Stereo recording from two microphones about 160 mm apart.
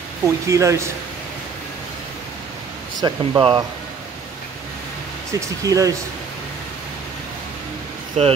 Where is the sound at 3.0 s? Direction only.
30° right (ahead or behind).